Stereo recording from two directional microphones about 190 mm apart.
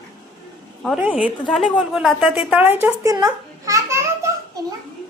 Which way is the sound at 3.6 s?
15° right (ahead or behind).